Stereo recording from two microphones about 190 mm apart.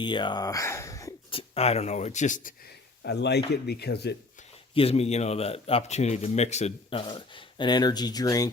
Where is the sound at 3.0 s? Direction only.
60° left (ahead or behind).